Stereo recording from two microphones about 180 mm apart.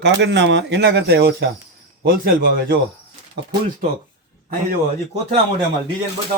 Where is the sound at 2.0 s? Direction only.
55° right (ahead or behind).